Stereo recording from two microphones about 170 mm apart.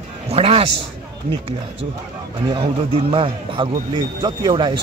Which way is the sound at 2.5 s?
30° right (ahead or behind).